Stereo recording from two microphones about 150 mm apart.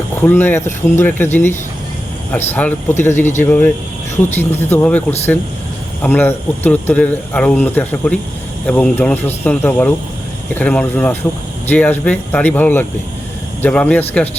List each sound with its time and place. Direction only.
0.2 s a man's voice: 15° left (ahead or behind)